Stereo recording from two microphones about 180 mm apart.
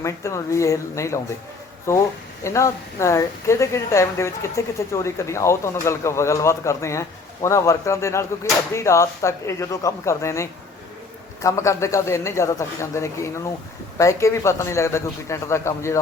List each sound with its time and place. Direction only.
0.0 s a woman's voice: 15° left (ahead or behind)